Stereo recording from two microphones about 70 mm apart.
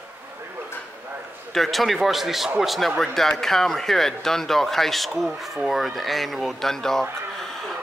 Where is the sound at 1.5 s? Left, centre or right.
Centre.